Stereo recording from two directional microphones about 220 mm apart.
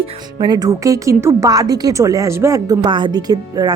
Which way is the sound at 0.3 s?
20° right (ahead or behind).